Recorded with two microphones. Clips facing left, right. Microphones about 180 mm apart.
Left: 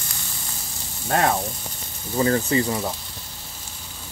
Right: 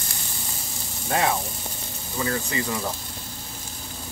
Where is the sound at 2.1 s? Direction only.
35° left (ahead or behind).